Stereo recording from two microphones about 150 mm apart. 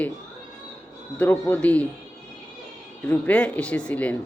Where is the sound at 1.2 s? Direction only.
10° left (ahead or behind).